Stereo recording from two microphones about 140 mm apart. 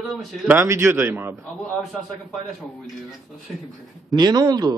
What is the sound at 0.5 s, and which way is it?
Speech, 20° right (ahead or behind).